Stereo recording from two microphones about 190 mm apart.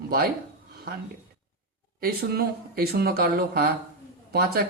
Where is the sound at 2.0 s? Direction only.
55° right (ahead or behind).